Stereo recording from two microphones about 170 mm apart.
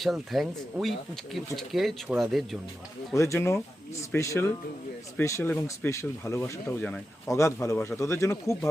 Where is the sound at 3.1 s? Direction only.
15° left (ahead or behind).